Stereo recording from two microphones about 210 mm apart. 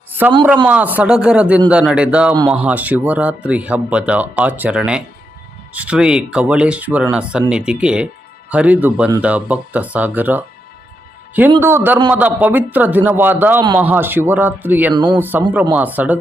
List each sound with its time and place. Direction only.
0.7 s speech: 5° right (ahead or behind)
11.6 s speech: 10° right (ahead or behind)
14.9 s speech: 20° right (ahead or behind)
15.2 s speech: 10° right (ahead or behind)